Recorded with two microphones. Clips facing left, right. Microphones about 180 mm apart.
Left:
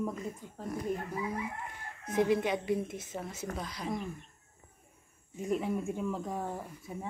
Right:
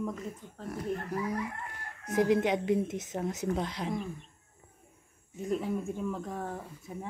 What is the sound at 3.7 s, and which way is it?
Speech, 90° right.